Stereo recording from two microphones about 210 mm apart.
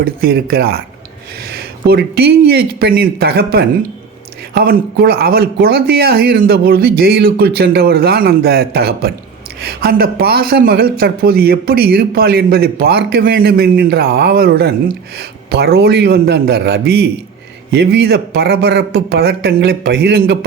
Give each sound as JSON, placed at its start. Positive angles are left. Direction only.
{"t": 0.0, "sound": "speech", "side_deg": -45}